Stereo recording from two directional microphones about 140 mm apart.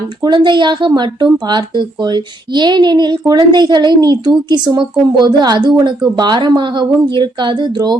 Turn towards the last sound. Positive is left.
turn(degrees=-30)  # may be behind; listen again after turning